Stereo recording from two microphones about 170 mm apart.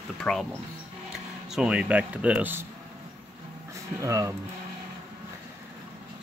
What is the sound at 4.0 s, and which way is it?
Speech, 20° right (ahead or behind).